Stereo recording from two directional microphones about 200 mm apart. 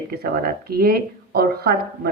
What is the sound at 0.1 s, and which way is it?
A woman's voice, 50° right (ahead or behind).